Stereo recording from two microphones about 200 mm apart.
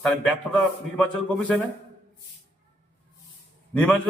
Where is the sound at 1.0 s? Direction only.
5° left (ahead or behind).